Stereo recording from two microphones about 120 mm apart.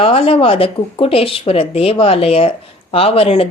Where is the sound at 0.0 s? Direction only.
50° left (ahead or behind).